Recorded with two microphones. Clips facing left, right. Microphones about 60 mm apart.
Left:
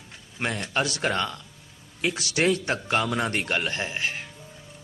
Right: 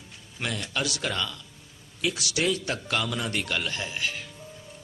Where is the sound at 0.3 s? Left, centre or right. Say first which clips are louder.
Left 4 dB; left.